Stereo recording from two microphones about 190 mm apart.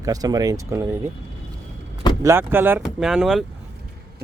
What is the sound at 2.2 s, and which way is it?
Speech, 10° right (ahead or behind).